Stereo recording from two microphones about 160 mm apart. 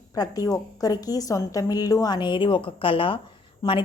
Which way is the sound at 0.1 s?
25° left (ahead or behind).